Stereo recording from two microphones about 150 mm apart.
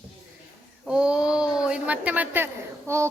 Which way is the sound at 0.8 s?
5° right (ahead or behind).